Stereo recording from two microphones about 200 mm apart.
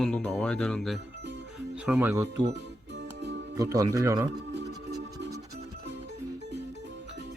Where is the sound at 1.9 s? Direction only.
10° right (ahead or behind).